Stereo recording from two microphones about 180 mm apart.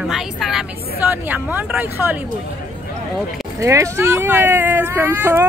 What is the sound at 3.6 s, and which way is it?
Speech, 15° right (ahead or behind).